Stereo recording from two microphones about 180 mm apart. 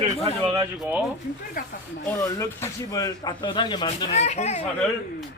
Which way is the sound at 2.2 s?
15° left (ahead or behind).